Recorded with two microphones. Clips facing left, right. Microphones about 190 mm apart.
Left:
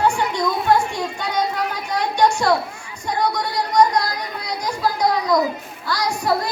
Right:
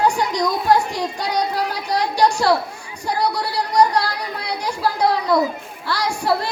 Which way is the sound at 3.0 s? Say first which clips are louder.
Even; 35° right (ahead or behind).